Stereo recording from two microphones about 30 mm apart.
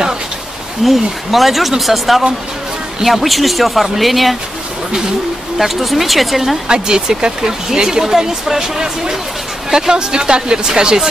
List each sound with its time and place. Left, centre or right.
0.8 s speech: centre
5.6 s speech: centre
6.7 s speech: right